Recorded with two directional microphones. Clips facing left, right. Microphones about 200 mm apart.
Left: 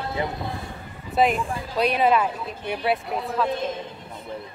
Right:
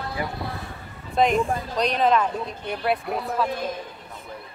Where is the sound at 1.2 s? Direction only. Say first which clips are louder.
Right 1 dB; 5° left (ahead or behind).